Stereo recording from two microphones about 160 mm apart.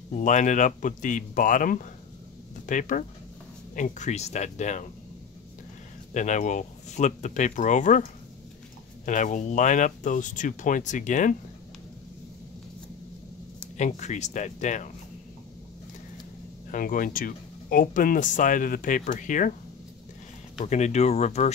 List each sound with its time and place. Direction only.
0.2 s speech: 50° left (ahead or behind)
6.1 s speech: 50° left (ahead or behind)
13.7 s speech: 45° left (ahead or behind)
16.7 s speech: 60° left (ahead or behind)
20.6 s speech: 45° left (ahead or behind)